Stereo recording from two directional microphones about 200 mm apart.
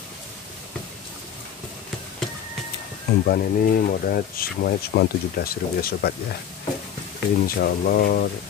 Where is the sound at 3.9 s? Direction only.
45° left (ahead or behind).